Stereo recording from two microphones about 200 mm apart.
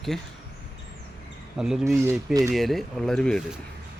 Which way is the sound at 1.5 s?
5° right (ahead or behind).